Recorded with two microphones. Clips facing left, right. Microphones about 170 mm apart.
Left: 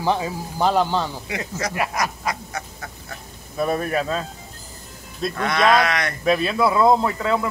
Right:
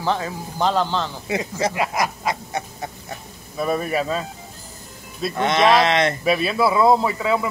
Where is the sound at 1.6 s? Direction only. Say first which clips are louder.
Right 5 dB; 25° right (ahead or behind).